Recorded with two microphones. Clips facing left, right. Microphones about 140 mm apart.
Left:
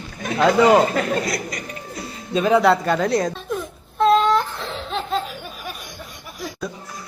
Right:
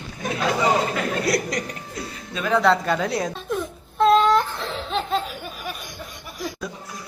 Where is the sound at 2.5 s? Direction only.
5° left (ahead or behind).